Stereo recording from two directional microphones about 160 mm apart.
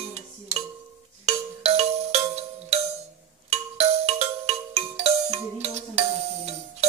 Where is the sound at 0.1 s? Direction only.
40° right (ahead or behind).